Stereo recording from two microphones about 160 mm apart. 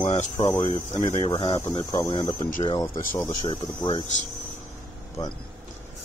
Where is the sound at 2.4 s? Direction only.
50° left (ahead or behind).